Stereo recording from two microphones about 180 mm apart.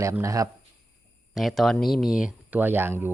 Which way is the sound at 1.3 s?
Centre (ahead or behind).